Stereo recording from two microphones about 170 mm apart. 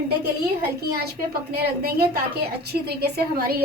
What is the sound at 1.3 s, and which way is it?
A woman's voice, 65° right (ahead or behind).